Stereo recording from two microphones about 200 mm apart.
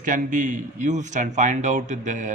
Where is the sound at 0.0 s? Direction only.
40° right (ahead or behind).